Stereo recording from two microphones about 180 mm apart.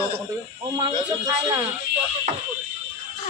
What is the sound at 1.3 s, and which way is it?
Speech, 15° right (ahead or behind).